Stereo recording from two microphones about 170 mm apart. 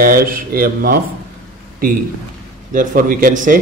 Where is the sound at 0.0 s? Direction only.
60° right (ahead or behind).